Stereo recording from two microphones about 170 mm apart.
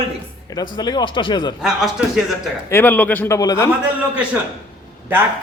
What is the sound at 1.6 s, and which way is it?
Speech, centre (ahead or behind).